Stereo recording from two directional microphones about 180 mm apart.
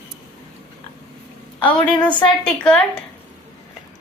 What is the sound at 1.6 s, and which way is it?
Speech, 25° left (ahead or behind).